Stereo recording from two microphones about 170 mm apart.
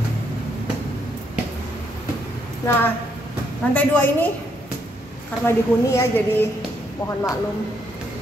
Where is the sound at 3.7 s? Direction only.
10° left (ahead or behind).